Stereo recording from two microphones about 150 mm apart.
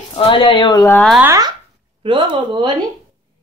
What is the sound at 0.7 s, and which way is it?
Speech, 20° left (ahead or behind).